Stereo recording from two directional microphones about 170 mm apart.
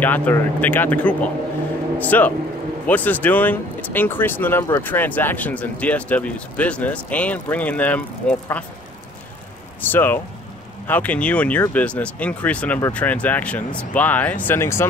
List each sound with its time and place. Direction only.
0.0 s speech: 10° left (ahead or behind)
9.8 s speech: 10° left (ahead or behind)